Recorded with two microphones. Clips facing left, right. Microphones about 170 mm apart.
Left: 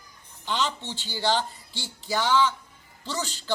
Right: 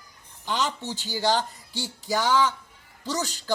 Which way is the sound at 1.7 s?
40° right (ahead or behind).